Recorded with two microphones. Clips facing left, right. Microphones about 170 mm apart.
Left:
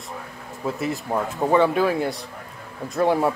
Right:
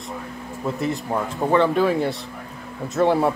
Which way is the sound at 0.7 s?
Centre (ahead or behind).